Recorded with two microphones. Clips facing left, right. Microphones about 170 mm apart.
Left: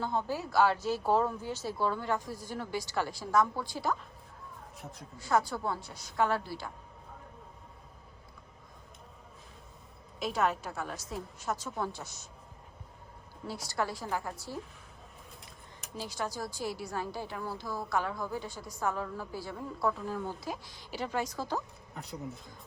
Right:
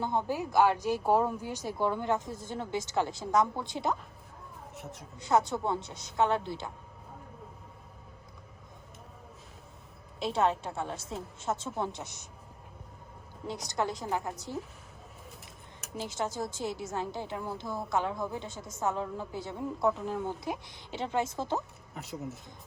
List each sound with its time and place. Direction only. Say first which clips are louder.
0.0 s a woman's voice: right 2 dB; 20° right (ahead or behind)
4.7 s speech: right 4 dB; centre (ahead or behind)
5.1 s a woman's voice: right 2 dB; 20° right (ahead or behind)
10.2 s a woman's voice: right 2 dB; 30° right (ahead or behind)
13.5 s a woman's voice: right 2 dB; 20° right (ahead or behind)
16.0 s a woman's voice: right 3 dB; 20° right (ahead or behind)
21.9 s speech: right 2 dB; 5° right (ahead or behind)